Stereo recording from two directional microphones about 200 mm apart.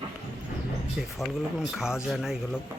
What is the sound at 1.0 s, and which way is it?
Speech, centre (ahead or behind).